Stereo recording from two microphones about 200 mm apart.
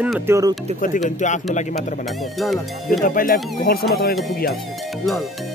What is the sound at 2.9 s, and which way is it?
Speech, 45° left (ahead or behind).